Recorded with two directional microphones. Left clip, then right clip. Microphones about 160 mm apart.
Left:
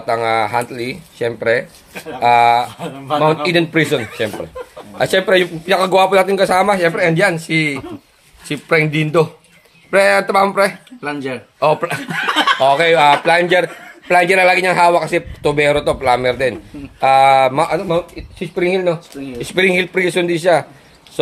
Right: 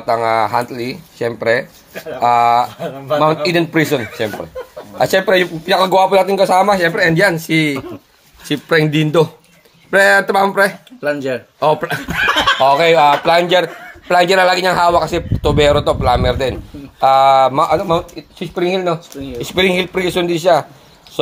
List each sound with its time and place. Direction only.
0.0 s a man's voice: centre (ahead or behind)
11.0 s speech: centre (ahead or behind)
11.6 s a man's voice: 10° right (ahead or behind)